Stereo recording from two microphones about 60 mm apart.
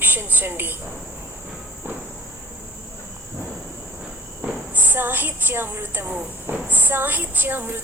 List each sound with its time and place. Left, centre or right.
0.0 s speech: right
4.7 s a woman's voice: right